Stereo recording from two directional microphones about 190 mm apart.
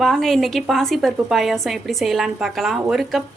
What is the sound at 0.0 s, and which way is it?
A woman's voice, centre (ahead or behind).